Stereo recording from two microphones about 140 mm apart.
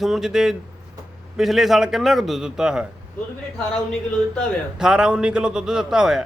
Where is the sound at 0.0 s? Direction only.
5° right (ahead or behind).